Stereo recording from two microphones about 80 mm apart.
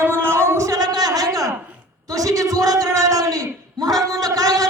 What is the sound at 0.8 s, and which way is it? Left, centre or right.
A man's voice, right.